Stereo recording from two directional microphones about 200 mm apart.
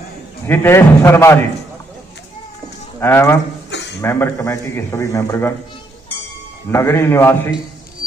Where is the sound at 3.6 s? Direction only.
60° left (ahead or behind).